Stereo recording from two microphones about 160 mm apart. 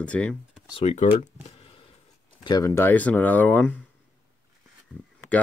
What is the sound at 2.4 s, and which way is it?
Speech, 20° left (ahead or behind).